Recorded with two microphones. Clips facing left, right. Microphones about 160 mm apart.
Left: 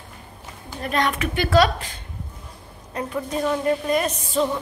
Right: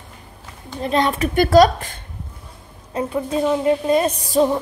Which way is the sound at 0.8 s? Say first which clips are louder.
Right 4 dB; 30° right (ahead or behind).